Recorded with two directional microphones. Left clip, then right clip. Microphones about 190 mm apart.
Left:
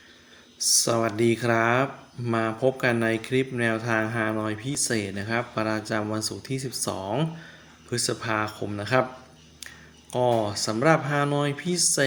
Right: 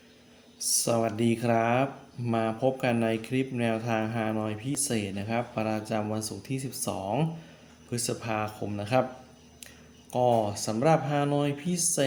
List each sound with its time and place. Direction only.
0.6 s speech: 15° left (ahead or behind)
10.1 s speech: 20° left (ahead or behind)